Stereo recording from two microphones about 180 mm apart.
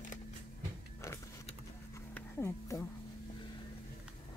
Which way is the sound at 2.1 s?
15° left (ahead or behind).